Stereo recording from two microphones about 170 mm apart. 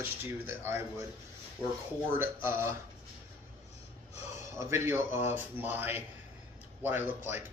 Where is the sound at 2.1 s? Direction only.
15° right (ahead or behind).